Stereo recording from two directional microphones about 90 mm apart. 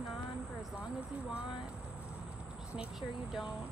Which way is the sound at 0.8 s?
10° right (ahead or behind).